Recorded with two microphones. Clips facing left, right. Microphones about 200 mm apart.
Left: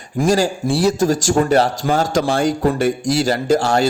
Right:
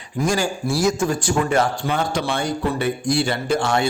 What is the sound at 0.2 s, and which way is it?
A man's voice, 35° left (ahead or behind).